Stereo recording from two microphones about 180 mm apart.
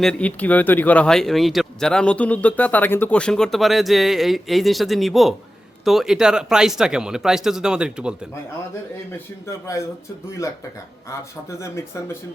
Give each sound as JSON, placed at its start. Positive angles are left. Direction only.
{"t": 0.0, "sound": "speech", "side_deg": 5}
{"t": 11.6, "sound": "speech", "side_deg": 15}